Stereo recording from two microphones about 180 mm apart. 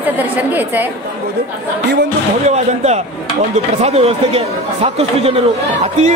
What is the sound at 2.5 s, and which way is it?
A man's voice, 40° right (ahead or behind).